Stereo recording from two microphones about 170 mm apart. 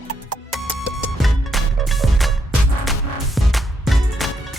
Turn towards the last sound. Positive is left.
turn(degrees=0)  # may be behind; listen again after turning